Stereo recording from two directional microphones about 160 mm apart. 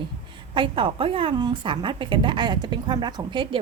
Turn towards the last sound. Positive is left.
turn(degrees=-30)  # may be behind; listen again after turning